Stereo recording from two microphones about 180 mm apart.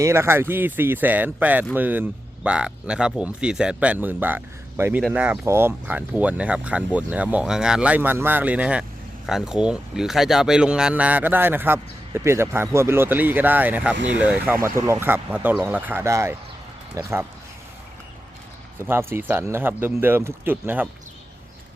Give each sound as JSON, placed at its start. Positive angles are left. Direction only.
{"t": 0.0, "sound": "speech", "side_deg": -15}
{"t": 18.8, "sound": "speech", "side_deg": -15}